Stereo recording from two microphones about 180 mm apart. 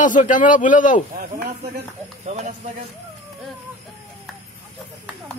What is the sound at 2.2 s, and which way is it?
Speech, 40° right (ahead or behind).